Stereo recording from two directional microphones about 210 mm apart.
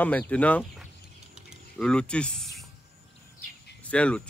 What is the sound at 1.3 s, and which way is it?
Mechanisms, centre (ahead or behind).